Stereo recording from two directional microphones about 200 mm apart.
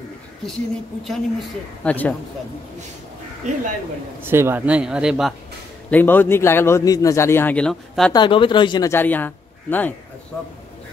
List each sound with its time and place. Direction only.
1.0 s a woman's voice: centre (ahead or behind)
3.4 s speech: 35° right (ahead or behind)
4.2 s a woman's voice: 10° right (ahead or behind)
5.9 s a man's voice: 10° left (ahead or behind)
8.1 s a man's voice: 25° left (ahead or behind); by 9.9 s 10° left (ahead or behind)